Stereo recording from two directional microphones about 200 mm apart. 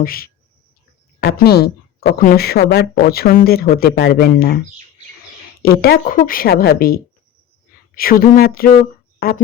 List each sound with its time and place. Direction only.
0.0 s a woman's voice: 50° left (ahead or behind)
5.6 s a woman's voice: 50° left (ahead or behind)